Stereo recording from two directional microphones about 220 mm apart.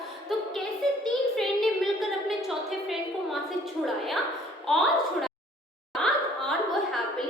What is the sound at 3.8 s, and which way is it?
A woman's voice, centre (ahead or behind).